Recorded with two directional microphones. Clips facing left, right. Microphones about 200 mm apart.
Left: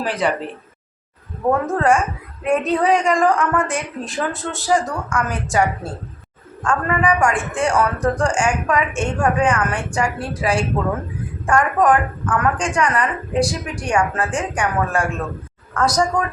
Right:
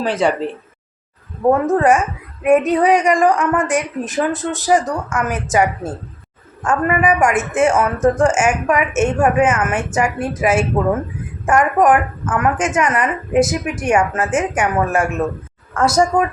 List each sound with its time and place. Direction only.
0.0 s a woman's voice: 25° right (ahead or behind)
1.5 s a woman's voice: 20° right (ahead or behind)
3.3 s a woman's voice: centre (ahead or behind)
3.7 s a woman's voice: 20° right (ahead or behind)